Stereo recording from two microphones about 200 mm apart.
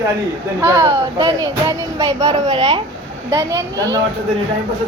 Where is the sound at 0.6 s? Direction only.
15° right (ahead or behind).